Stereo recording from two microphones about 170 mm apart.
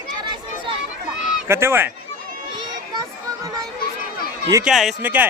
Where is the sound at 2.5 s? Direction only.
25° right (ahead or behind).